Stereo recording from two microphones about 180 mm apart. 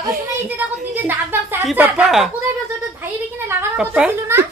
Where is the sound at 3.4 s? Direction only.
10° right (ahead or behind).